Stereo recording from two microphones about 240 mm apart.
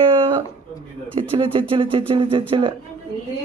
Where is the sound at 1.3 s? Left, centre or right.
Right.